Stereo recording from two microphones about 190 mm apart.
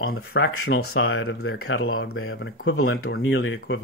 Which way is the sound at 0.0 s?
85° left.